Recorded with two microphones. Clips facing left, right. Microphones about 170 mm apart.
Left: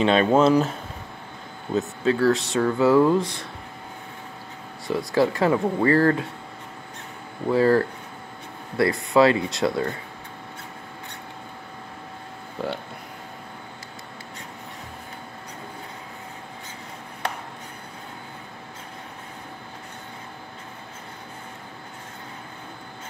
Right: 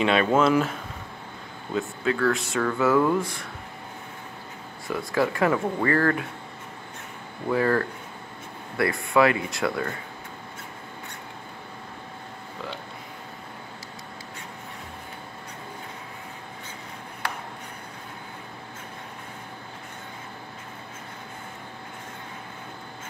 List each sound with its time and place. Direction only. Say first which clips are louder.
0.0 s speech: left 3 dB; 30° left (ahead or behind)
1.8 s speech: left 3 dB; 30° left (ahead or behind)
4.8 s speech: left 4 dB; 30° left (ahead or behind)
7.5 s speech: left 4 dB; 30° left (ahead or behind)